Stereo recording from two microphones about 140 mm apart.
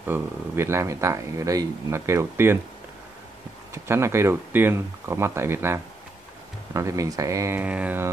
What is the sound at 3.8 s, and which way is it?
Speech, 20° right (ahead or behind).